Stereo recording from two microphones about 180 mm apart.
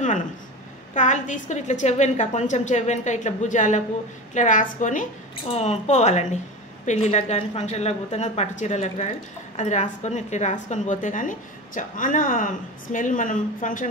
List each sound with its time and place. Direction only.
0.9 s a woman's voice: 45° left (ahead or behind)